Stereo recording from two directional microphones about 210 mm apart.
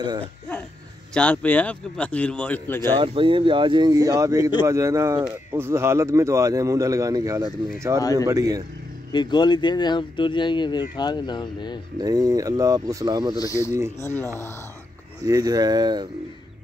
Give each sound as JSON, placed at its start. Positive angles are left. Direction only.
{"t": 1.1, "sound": "a man's voice", "side_deg": 5}
{"t": 3.0, "sound": "speech", "side_deg": -25}
{"t": 8.0, "sound": "a man's voice", "side_deg": 15}
{"t": 8.3, "sound": "speech", "side_deg": -15}
{"t": 9.1, "sound": "speech", "side_deg": 20}
{"t": 12.0, "sound": "speech", "side_deg": -20}
{"t": 13.4, "sound": "a man's voice", "side_deg": 15}
{"t": 15.2, "sound": "speech", "side_deg": -15}